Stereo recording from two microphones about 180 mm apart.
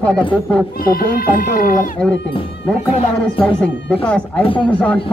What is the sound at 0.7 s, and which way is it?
Speech, 55° left (ahead or behind).